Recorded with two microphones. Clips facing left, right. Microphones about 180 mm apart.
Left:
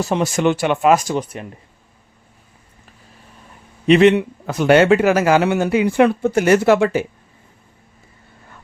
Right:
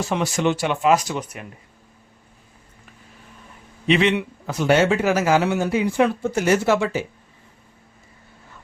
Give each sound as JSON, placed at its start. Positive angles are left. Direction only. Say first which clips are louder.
{"t": 0.0, "sound": "speech", "louder": "left 4 dB", "side_deg": 40}
{"t": 1.2, "sound": "speech", "louder": "left 5 dB", "side_deg": 30}
{"t": 3.8, "sound": "speech", "louder": "left 7 dB", "side_deg": 45}
{"t": 4.4, "sound": "speech", "louder": "left 5 dB", "side_deg": 60}